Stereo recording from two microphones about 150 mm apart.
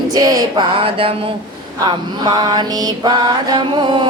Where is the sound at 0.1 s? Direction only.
25° right (ahead or behind).